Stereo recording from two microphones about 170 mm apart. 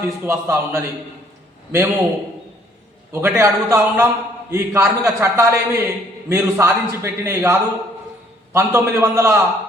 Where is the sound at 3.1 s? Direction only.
15° right (ahead or behind).